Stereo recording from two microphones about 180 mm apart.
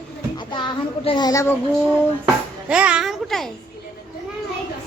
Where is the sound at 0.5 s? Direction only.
25° left (ahead or behind).